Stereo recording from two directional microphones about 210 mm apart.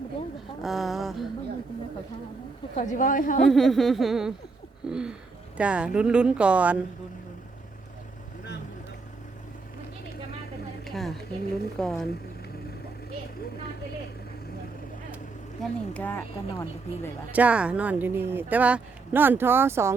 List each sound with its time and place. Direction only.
0.6 s speech: centre (ahead or behind)
2.7 s a woman's voice: 35° left (ahead or behind)
3.4 s speech: centre (ahead or behind)
10.8 s speech: centre (ahead or behind)
15.6 s speech: 5° left (ahead or behind)
17.3 s speech: 5° right (ahead or behind)